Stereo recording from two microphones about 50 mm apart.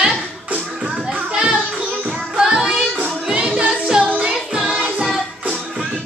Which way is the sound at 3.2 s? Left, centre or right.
Right.